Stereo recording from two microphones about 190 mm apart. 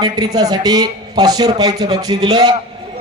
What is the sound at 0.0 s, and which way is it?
A man's voice, 20° right (ahead or behind).